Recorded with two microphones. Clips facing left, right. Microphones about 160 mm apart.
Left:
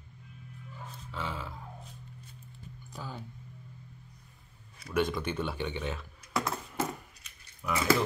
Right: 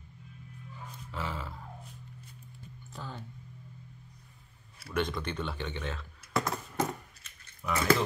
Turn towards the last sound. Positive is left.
turn(degrees=5)  # may be behind; listen again after turning